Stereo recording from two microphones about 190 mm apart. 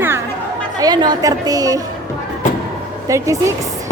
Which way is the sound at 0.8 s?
20° right (ahead or behind).